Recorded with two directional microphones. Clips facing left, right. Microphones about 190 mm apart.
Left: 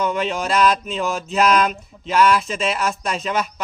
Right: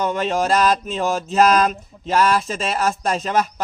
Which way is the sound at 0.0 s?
40° right (ahead or behind).